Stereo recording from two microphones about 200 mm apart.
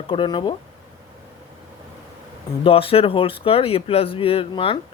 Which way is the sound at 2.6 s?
30° left (ahead or behind).